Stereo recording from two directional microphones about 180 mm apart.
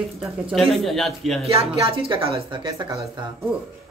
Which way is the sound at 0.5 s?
Centre (ahead or behind).